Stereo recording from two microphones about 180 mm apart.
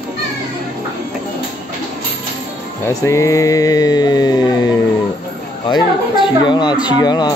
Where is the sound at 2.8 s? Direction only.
15° left (ahead or behind).